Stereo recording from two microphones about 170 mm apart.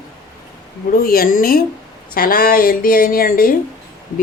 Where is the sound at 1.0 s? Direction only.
60° left (ahead or behind).